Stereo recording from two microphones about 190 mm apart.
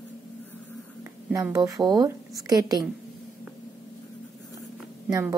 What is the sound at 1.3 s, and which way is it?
A woman's voice, 15° right (ahead or behind).